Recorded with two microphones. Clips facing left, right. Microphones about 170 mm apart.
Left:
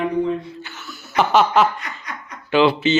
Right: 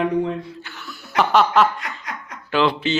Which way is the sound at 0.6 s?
Centre (ahead or behind).